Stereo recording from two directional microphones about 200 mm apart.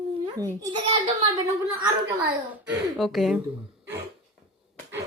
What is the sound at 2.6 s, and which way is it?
Speech, 5° right (ahead or behind).